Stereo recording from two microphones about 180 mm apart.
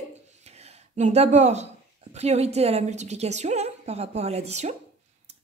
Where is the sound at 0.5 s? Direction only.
35° right (ahead or behind).